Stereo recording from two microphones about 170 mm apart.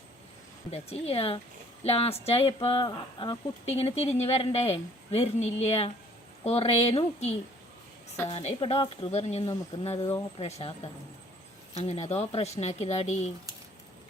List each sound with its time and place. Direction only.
0.7 s speech: 35° left (ahead or behind)
10.0 s speech: 15° left (ahead or behind)
10.3 s speech: 30° left (ahead or behind)
11.8 s speech: 40° left (ahead or behind)